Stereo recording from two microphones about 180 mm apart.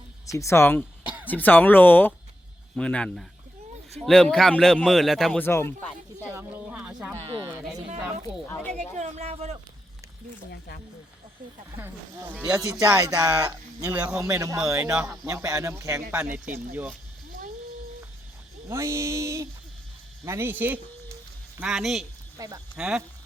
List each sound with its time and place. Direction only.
0.3 s speech: 15° left (ahead or behind)
1.0 s a sound: 10° right (ahead or behind)
1.3 s speech: 10° left (ahead or behind)
6.2 s speech: 10° right (ahead or behind)
7.3 s speech: 25° right (ahead or behind)
8.4 s speech: 10° left (ahead or behind)
9.0 s speech: 40° right (ahead or behind)
11.8 s speech: 10° right (ahead or behind)
12.5 s speech: 20° right (ahead or behind)
13.9 s speech: 5° right (ahead or behind)
14.2 s speech: 15° right (ahead or behind)
18.7 s speech: 15° right (ahead or behind)
22.4 s speech: 20° right (ahead or behind)
22.8 s speech: 5° right (ahead or behind)